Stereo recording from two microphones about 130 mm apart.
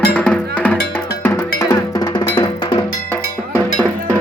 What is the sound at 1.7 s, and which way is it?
Music, 30° left (ahead or behind).